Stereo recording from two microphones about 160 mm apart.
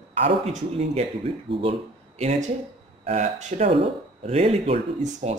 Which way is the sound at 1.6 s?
40° right (ahead or behind).